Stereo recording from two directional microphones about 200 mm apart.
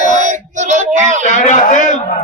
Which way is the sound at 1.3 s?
35° left (ahead or behind).